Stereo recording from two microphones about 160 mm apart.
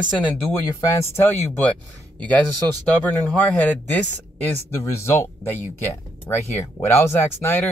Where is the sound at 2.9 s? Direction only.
10° left (ahead or behind).